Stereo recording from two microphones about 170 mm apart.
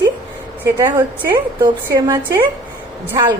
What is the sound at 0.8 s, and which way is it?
A woman's voice, 20° right (ahead or behind).